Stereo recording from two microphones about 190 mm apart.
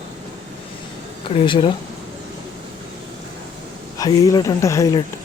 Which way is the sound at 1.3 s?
30° left (ahead or behind).